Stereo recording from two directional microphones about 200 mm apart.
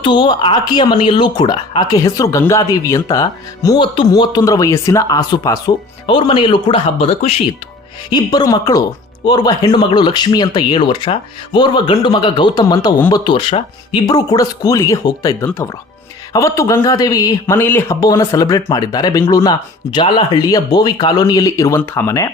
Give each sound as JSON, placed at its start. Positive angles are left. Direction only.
{"t": 0.0, "sound": "speech", "side_deg": 25}
{"t": 8.1, "sound": "speech", "side_deg": 20}